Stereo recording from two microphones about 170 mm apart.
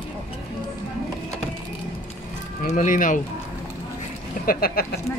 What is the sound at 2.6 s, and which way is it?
Speech, 45° left (ahead or behind).